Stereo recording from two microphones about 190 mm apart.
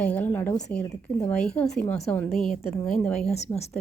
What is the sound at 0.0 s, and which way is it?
A woman's voice, 10° left (ahead or behind).